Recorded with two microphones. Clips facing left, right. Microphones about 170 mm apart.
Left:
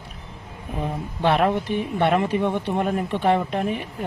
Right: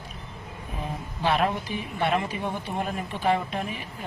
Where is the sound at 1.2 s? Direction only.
60° left (ahead or behind).